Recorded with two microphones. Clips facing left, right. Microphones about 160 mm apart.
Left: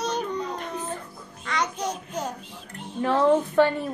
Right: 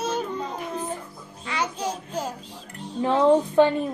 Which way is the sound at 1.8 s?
30° right (ahead or behind).